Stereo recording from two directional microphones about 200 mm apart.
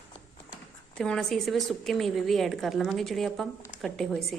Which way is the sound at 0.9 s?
5° left (ahead or behind).